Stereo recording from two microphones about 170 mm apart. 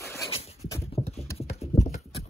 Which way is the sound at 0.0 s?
15° left (ahead or behind).